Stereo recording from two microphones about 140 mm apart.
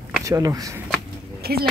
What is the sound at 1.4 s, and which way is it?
Speech, 90° right.